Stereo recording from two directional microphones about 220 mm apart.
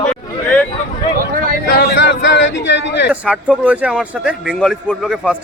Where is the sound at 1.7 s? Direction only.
50° left (ahead or behind).